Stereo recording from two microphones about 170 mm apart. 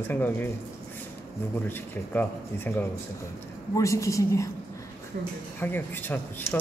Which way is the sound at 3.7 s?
20° left (ahead or behind).